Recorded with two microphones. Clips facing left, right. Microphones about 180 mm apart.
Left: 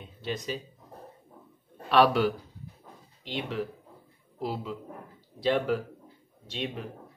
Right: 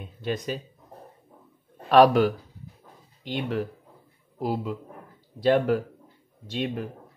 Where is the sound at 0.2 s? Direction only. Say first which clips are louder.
Right 4 dB; 50° right (ahead or behind).